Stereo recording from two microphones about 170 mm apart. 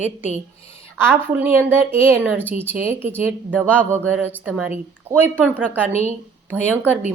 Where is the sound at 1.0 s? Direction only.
15° right (ahead or behind).